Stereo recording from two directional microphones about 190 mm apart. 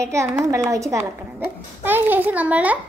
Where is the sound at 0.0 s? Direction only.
15° right (ahead or behind).